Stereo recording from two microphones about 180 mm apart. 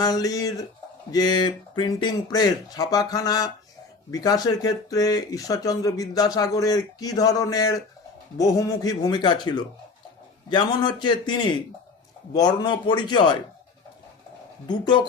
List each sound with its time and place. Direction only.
0.0 s speech: 20° left (ahead or behind)
14.7 s speech: 25° left (ahead or behind)